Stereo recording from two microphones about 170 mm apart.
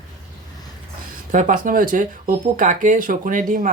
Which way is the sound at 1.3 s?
50° right (ahead or behind).